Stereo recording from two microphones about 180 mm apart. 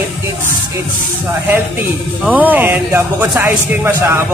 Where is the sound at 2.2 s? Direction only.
10° right (ahead or behind).